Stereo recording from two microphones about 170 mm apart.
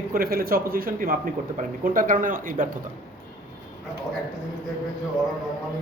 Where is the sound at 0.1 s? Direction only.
60° right (ahead or behind).